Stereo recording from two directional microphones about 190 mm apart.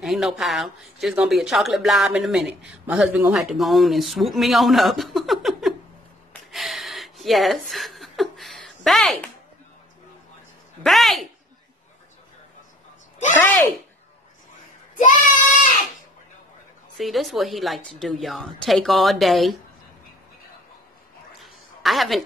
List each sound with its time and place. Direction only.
0.0 s speech: centre (ahead or behind)
6.5 s a sound: centre (ahead or behind)
10.8 s speech: centre (ahead or behind)
15.0 s child singing: 40° left (ahead or behind)
16.9 s speech: centre (ahead or behind)
21.4 s a sound: centre (ahead or behind)